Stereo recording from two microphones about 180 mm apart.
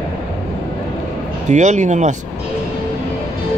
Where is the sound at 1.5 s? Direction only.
40° right (ahead or behind).